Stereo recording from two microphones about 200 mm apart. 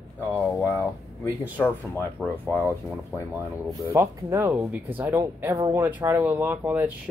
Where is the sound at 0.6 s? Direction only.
15° left (ahead or behind).